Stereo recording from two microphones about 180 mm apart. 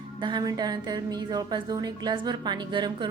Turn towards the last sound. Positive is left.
turn(degrees=-25)  # may be behind; listen again after turning